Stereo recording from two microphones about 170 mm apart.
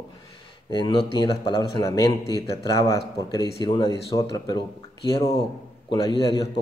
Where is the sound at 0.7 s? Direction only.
30° left (ahead or behind).